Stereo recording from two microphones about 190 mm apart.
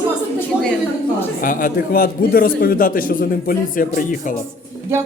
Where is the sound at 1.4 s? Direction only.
45° left (ahead or behind).